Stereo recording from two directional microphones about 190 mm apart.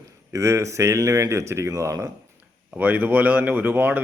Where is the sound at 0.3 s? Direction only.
15° right (ahead or behind).